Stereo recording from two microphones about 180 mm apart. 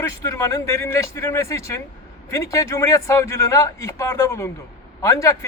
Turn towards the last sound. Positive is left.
turn(degrees=15)  # may be behind; listen again after turning